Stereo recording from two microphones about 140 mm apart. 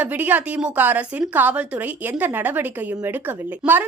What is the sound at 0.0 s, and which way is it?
A woman's voice, 10° right (ahead or behind).